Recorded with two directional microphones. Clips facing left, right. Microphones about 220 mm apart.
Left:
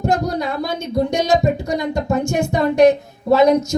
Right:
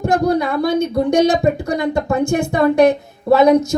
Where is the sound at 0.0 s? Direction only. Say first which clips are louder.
Right 4 dB; 55° right (ahead or behind).